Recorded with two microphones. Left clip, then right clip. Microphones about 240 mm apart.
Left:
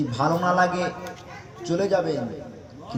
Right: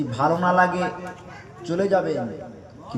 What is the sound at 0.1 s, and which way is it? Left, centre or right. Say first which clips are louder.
A man's voice: right 3 dB; right.